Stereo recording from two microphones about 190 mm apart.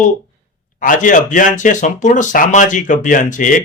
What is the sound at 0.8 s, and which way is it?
Speech, 45° left (ahead or behind).